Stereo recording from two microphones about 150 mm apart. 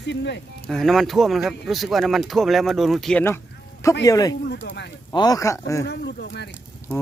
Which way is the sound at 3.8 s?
25° left (ahead or behind).